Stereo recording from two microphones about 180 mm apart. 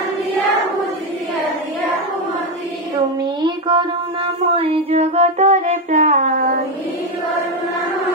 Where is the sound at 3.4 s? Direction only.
30° right (ahead or behind); by 6.5 s 45° right (ahead or behind).